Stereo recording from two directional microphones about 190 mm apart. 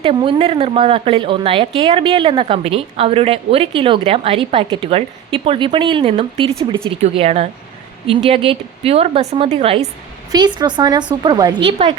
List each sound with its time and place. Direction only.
0.0 s a woman's voice: 25° right (ahead or behind)
6.6 s speech: 15° right (ahead or behind)
6.8 s a woman's voice: 30° right (ahead or behind)